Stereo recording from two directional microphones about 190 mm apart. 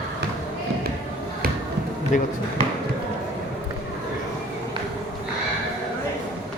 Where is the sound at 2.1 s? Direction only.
40° left (ahead or behind).